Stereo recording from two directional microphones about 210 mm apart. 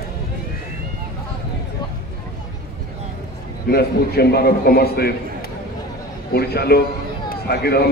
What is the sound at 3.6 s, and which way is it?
A man's voice, 50° left (ahead or behind).